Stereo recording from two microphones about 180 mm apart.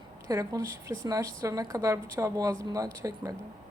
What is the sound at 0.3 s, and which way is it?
A woman's voice, 20° right (ahead or behind).